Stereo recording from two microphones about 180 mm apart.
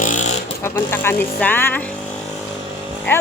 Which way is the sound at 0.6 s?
15° left (ahead or behind).